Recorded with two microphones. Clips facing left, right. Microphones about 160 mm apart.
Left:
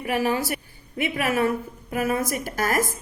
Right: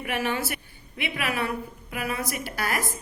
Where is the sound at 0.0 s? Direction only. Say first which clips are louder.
Left 4 dB; 35° left (ahead or behind).